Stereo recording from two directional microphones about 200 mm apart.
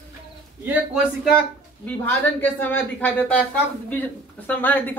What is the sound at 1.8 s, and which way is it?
Speech, 10° left (ahead or behind).